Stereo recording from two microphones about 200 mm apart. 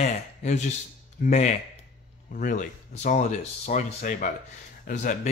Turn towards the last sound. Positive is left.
turn(degrees=40)  # may be behind; listen again after turning